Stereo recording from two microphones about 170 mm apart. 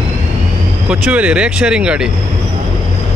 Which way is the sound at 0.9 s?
5° right (ahead or behind).